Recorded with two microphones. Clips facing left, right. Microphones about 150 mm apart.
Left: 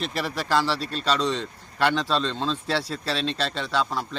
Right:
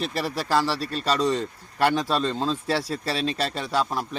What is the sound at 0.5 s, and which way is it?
Speech, 5° right (ahead or behind).